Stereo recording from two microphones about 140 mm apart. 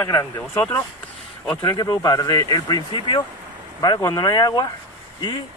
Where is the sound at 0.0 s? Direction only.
20° left (ahead or behind).